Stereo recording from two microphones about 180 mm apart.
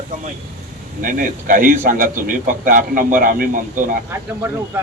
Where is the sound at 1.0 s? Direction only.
50° right (ahead or behind).